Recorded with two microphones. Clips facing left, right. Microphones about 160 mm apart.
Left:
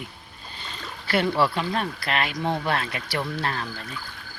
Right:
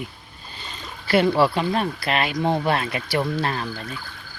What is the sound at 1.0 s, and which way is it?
Speech, 15° right (ahead or behind).